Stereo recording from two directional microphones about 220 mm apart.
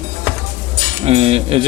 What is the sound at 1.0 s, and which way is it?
Speech, 25° right (ahead or behind).